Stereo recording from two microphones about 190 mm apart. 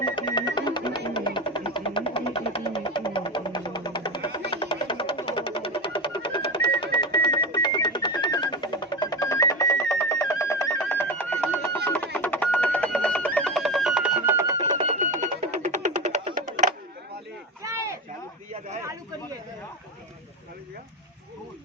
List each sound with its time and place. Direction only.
0.0 s music: 25° left (ahead or behind); by 14.8 s 15° right (ahead or behind)
14.8 s music: 35° right (ahead or behind)
17.6 s a sound: 15° right (ahead or behind)